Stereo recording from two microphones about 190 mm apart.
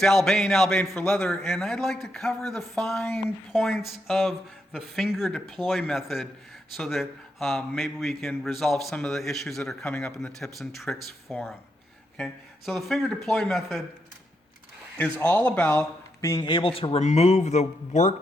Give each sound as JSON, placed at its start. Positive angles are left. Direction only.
{"t": 0.0, "sound": "a man's voice", "side_deg": 0}
{"t": 14.9, "sound": "speech", "side_deg": 5}